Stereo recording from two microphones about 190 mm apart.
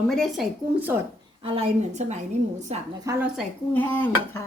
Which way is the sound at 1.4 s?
30° right (ahead or behind).